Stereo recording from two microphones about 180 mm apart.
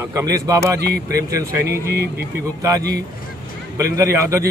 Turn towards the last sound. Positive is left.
turn(degrees=-15)  # may be behind; listen again after turning